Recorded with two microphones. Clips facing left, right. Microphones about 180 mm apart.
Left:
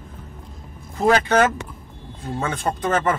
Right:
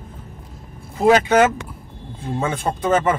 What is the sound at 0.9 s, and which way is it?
Speech, 10° right (ahead or behind).